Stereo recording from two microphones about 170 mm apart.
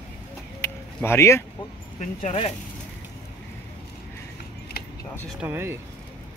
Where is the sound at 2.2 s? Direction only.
35° left (ahead or behind).